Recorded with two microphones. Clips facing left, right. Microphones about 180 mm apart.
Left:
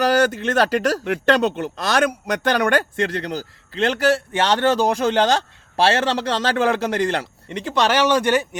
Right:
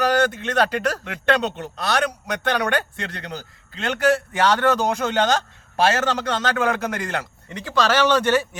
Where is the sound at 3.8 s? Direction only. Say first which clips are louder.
Left 2 dB; 30° left (ahead or behind).